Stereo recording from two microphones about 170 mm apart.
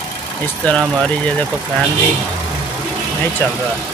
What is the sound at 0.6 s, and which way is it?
Speech, 5° left (ahead or behind).